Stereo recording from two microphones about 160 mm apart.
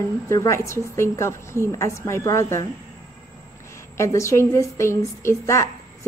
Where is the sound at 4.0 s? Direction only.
20° left (ahead or behind).